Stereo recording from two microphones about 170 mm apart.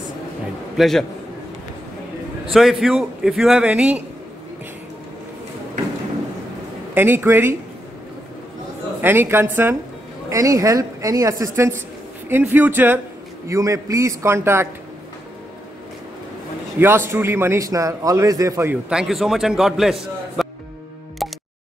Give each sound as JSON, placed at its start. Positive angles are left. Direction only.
{"t": 0.7, "sound": "a man's voice", "side_deg": 0}
{"t": 2.5, "sound": "a man's voice", "side_deg": 0}
{"t": 6.9, "sound": "a man's voice", "side_deg": -10}
{"t": 9.0, "sound": "a man's voice", "side_deg": -10}
{"t": 16.8, "sound": "a man's voice", "side_deg": -15}
{"t": 18.9, "sound": "a man's voice", "side_deg": -5}
{"t": 21.2, "sound": "music", "side_deg": 0}